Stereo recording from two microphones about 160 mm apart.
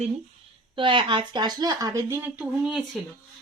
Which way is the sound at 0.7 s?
30° right (ahead or behind).